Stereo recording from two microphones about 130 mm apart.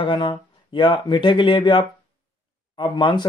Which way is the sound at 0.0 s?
40° left (ahead or behind).